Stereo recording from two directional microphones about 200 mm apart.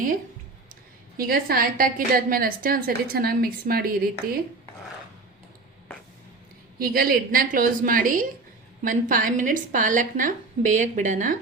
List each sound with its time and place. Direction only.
0.7 s a woman's voice: 45° right (ahead or behind)
6.7 s a woman's voice: 45° right (ahead or behind)